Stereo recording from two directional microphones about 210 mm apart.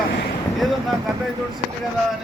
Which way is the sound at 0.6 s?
Centre (ahead or behind).